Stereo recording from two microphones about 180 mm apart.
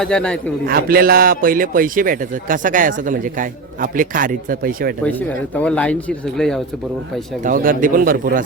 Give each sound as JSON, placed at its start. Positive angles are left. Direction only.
{"t": 0.0, "sound": "speech", "side_deg": 5}
{"t": 0.6, "sound": "a man's voice", "side_deg": -55}
{"t": 5.5, "sound": "speech", "side_deg": 5}
{"t": 7.4, "sound": "a man's voice", "side_deg": -50}